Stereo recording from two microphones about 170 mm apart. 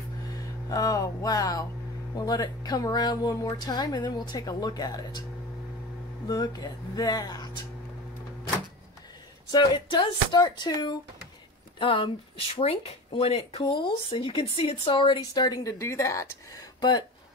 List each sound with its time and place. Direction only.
0.3 s speech: 20° left (ahead or behind)
6.2 s speech: 20° left (ahead or behind)
9.5 s speech: 25° left (ahead or behind)